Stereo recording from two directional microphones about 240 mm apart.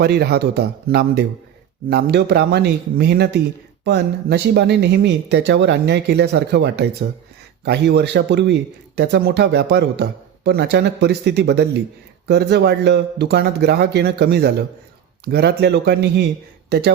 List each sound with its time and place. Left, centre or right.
0.0 s speech: right